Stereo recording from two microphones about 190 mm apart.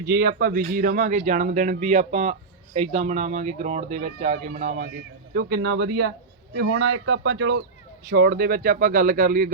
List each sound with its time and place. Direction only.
0.1 s speech: 55° right (ahead or behind)
5.3 s speech: 60° right (ahead or behind)
8.1 s speech: 55° right (ahead or behind)